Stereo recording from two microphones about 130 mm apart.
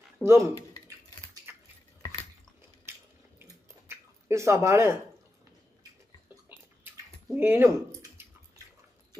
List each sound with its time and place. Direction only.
0.2 s speech: 20° right (ahead or behind)
3.3 s chewing: 20° right (ahead or behind)
7.3 s speech: 20° right (ahead or behind)
8.2 s drip: 15° right (ahead or behind)